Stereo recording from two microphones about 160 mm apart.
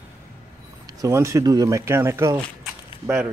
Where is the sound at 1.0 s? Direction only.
20° right (ahead or behind).